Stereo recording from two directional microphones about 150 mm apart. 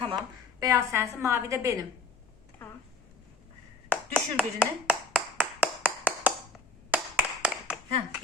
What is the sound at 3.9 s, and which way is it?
Clapping, 10° right (ahead or behind).